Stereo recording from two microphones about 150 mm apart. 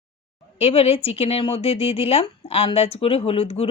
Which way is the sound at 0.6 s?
40° left (ahead or behind).